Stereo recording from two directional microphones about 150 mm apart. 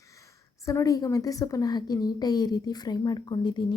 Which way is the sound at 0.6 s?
20° left (ahead or behind).